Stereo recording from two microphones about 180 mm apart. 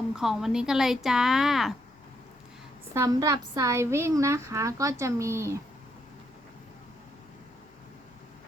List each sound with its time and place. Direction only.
0.1 s speech: centre (ahead or behind)
2.9 s a woman's voice: 15° right (ahead or behind)